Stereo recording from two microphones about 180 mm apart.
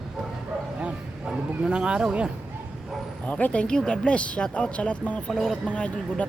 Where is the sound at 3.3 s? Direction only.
10° left (ahead or behind).